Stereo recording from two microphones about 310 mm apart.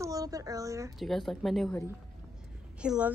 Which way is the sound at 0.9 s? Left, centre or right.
Centre.